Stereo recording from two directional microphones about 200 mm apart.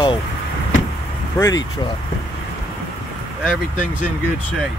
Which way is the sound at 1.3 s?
15° left (ahead or behind).